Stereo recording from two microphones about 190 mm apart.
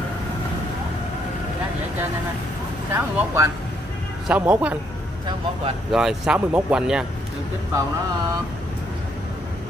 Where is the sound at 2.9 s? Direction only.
15° right (ahead or behind).